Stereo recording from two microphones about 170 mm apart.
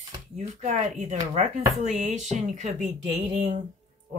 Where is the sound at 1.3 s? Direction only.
40° right (ahead or behind).